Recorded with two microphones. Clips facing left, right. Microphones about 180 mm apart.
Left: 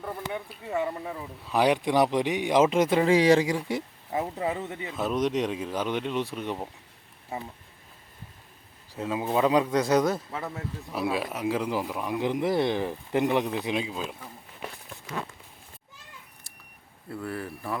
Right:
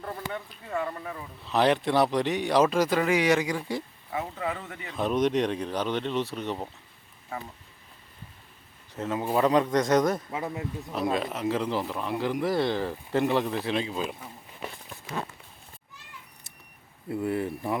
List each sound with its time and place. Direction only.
0.3 s speech: 15° left (ahead or behind)
4.9 s speech: 5° left (ahead or behind)
9.0 s speech: 10° left (ahead or behind)
10.3 s speech: 15° right (ahead or behind)
10.9 s speech: 5° left (ahead or behind)
17.1 s speech: 20° right (ahead or behind)